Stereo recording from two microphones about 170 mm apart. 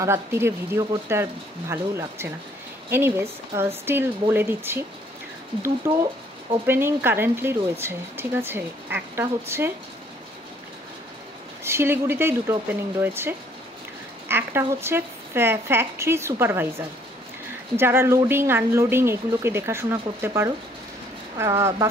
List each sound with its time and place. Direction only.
0.0 s speech: 15° right (ahead or behind)
5.9 s speech: 15° right (ahead or behind)
11.6 s speech: 15° right (ahead or behind)